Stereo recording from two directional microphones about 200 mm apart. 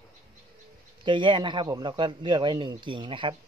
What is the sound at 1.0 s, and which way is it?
Speech, 25° right (ahead or behind).